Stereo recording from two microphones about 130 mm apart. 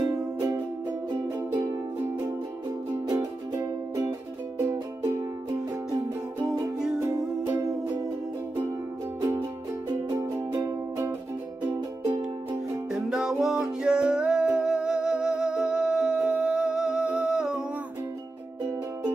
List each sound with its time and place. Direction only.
0.0 s music: 25° right (ahead or behind)
2.9 s music: 30° right (ahead or behind)
5.9 s music: 30° right (ahead or behind)
10.1 s music: 25° right (ahead or behind)
13.1 s music: 5° right (ahead or behind)